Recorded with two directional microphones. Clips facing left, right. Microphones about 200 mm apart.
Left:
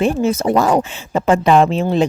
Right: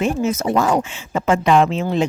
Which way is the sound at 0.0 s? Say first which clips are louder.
Left 3 dB; 30° left (ahead or behind).